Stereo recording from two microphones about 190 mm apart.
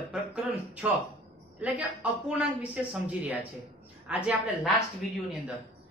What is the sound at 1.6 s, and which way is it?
Speech, 5° right (ahead or behind).